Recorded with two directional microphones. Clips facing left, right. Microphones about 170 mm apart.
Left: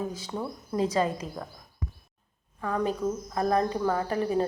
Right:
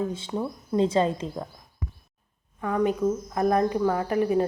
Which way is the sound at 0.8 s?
25° right (ahead or behind).